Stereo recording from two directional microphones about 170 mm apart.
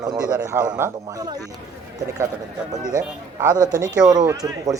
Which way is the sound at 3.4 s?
20° right (ahead or behind).